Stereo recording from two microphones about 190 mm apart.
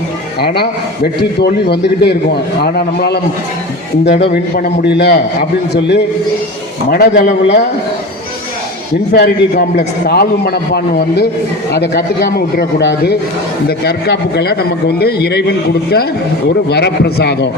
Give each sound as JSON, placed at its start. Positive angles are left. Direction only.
{"t": 0.3, "sound": "a man's voice", "side_deg": 60}
{"t": 9.1, "sound": "a man's voice", "side_deg": 55}